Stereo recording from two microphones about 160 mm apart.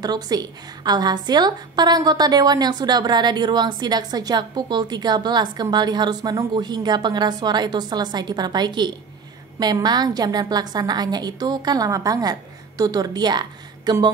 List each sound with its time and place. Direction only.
0.0 s a woman's voice: 25° right (ahead or behind)